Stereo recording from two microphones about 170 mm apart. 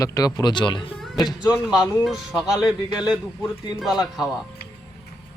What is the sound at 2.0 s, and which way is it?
Speech, 5° right (ahead or behind).